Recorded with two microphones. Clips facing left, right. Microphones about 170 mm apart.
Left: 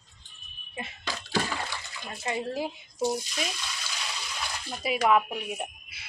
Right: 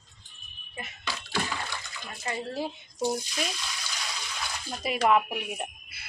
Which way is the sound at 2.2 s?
20° left (ahead or behind).